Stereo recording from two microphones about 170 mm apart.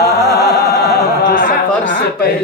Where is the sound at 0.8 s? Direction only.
65° left (ahead or behind).